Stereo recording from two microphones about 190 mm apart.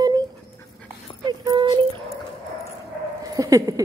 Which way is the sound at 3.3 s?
20° right (ahead or behind).